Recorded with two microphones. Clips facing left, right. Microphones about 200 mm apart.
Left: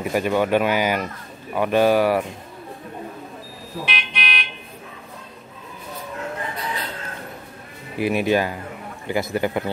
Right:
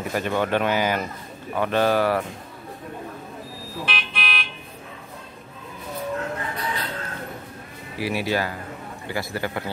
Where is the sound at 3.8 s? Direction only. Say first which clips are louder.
Left 1 dB; centre (ahead or behind).